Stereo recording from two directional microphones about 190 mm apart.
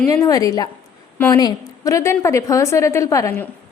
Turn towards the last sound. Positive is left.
turn(degrees=15)  # may be behind; listen again after turning